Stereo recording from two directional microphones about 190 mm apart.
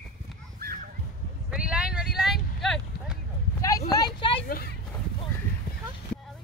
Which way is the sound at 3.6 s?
20° left (ahead or behind).